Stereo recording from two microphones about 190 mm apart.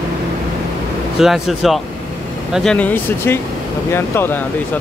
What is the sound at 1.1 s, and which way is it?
Speech, centre (ahead or behind).